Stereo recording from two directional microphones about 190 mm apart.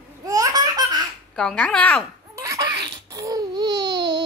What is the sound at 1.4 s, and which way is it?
Speech, 5° left (ahead or behind).